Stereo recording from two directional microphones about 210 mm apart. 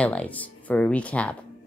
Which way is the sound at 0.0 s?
5° left (ahead or behind).